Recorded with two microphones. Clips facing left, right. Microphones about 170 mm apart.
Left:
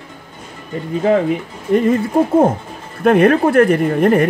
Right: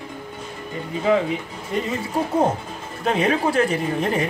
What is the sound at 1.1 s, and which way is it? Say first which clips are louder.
Speech: left 4 dB; 50° left (ahead or behind).